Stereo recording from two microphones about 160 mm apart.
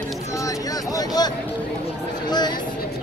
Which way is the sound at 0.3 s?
20° left (ahead or behind).